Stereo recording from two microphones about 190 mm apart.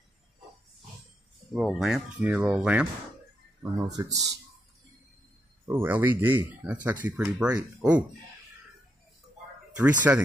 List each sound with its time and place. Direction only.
1.5 s speech: centre (ahead or behind)
3.7 s speech: 20° right (ahead or behind)
5.7 s speech: 10° right (ahead or behind)
9.7 s speech: 5° right (ahead or behind)